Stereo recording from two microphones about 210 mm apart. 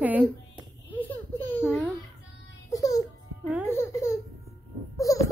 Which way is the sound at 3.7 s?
10° left (ahead or behind).